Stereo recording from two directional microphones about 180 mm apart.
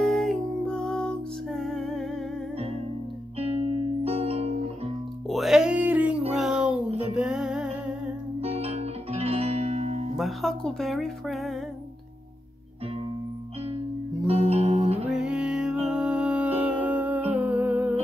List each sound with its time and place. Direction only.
0.0 s music: centre (ahead or behind)
4.0 s music: 35° right (ahead or behind)
5.3 s music: centre (ahead or behind)
8.4 s music: 35° right (ahead or behind)
10.1 s music: centre (ahead or behind)
14.2 s music: 35° right (ahead or behind)
15.0 s music: 5° right (ahead or behind)
15.9 s humming: 5° right (ahead or behind)